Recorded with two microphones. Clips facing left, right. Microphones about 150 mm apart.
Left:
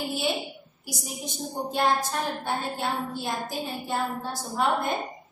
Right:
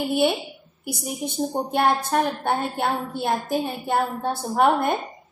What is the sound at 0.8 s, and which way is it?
A woman's voice, 60° right (ahead or behind).